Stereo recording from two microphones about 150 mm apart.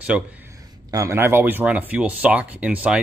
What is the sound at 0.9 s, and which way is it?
Speech, 20° right (ahead or behind).